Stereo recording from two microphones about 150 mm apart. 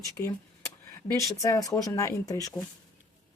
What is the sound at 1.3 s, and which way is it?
Speech, 20° left (ahead or behind).